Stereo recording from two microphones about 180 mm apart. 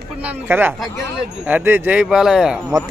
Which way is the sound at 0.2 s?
10° right (ahead or behind).